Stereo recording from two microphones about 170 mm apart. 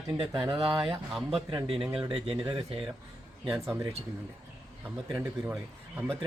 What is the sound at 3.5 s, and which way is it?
Speech, 15° right (ahead or behind).